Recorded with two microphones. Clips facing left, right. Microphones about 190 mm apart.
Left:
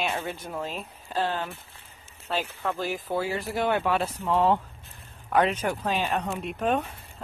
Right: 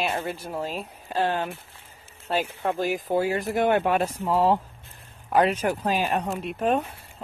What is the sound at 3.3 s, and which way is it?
Speech, 50° right (ahead or behind).